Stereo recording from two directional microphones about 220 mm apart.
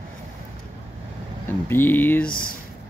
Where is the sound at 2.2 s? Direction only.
40° left (ahead or behind).